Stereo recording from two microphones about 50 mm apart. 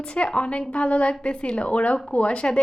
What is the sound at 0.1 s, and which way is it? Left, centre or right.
A woman's voice, left.